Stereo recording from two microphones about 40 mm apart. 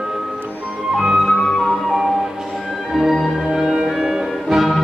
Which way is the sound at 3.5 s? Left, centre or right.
Centre.